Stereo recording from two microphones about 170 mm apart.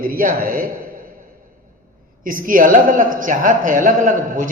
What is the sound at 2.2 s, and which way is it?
A man's voice, 55° right (ahead or behind).